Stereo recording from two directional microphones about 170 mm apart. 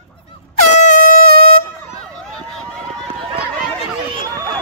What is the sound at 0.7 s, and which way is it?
Air horn, 40° left (ahead or behind).